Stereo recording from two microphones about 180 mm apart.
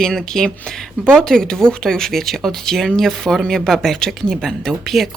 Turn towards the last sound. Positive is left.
turn(degrees=0)  # may be behind; listen again after turning